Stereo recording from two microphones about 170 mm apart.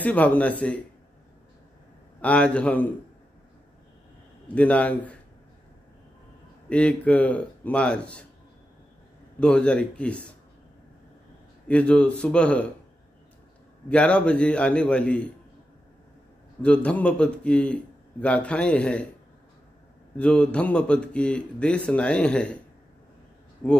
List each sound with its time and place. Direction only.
0.0 s speech: 10° left (ahead or behind)
2.2 s speech: 5° left (ahead or behind)
4.6 s speech: 10° left (ahead or behind)
6.7 s speech: 5° left (ahead or behind)
9.4 s speech: 5° left (ahead or behind)
11.6 s speech: 5° left (ahead or behind)
13.8 s speech: 5° left (ahead or behind)
16.6 s speech: 5° left (ahead or behind)
20.2 s speech: 5° left (ahead or behind)